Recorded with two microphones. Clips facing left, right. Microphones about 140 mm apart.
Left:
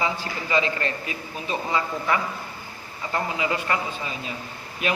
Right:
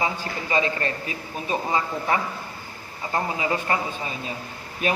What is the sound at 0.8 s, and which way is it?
Speech, 35° right (ahead or behind).